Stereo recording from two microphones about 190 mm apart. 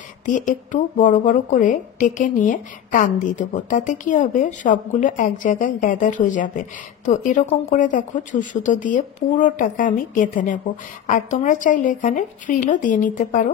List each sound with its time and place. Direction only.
0.2 s a woman's voice: 40° left (ahead or behind)